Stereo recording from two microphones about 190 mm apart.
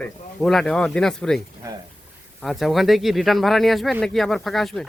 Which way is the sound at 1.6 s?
15° right (ahead or behind).